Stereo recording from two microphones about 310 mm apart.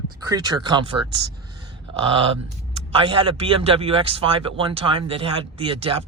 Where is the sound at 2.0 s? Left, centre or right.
Centre.